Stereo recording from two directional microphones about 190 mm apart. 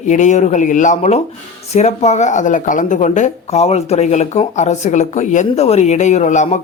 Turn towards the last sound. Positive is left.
turn(degrees=40)  # may be behind; listen again after turning